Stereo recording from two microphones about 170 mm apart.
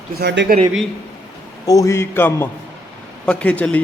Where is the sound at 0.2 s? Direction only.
75° right (ahead or behind).